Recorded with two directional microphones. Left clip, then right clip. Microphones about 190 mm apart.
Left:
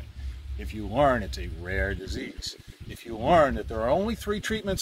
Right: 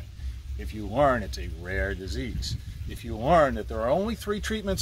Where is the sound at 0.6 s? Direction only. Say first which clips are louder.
Even; 15° left (ahead or behind).